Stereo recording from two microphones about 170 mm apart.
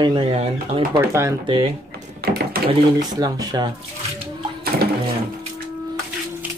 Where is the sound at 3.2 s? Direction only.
20° right (ahead or behind).